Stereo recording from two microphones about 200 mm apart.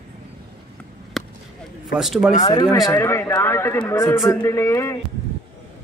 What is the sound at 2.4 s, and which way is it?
Speech, 25° left (ahead or behind).